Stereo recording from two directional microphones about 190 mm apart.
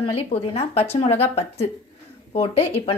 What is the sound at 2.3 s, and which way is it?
Speech, 35° left (ahead or behind).